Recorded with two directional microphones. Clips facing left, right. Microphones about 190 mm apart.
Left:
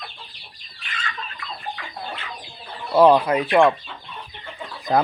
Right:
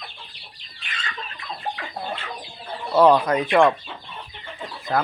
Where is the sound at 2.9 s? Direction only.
15° left (ahead or behind).